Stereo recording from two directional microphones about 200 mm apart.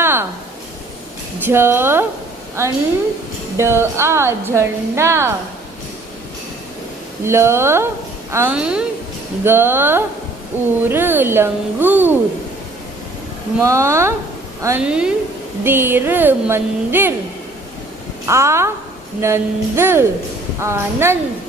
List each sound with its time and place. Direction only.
0.0 s a sound: 10° right (ahead or behind)
1.4 s a woman's voice: 10° right (ahead or behind)
7.2 s a woman's voice: 15° right (ahead or behind)
13.6 s a woman's voice: 15° right (ahead or behind)
18.2 s a woman's voice: 15° right (ahead or behind)